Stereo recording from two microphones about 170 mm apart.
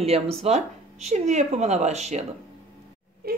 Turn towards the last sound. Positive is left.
turn(degrees=-60)  # may be behind; listen again after turning